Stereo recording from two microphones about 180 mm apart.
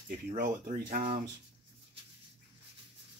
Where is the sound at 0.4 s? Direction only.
50° right (ahead or behind).